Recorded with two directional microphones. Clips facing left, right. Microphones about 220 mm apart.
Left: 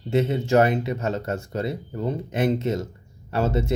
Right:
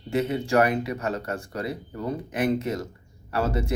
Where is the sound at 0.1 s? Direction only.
25° left (ahead or behind).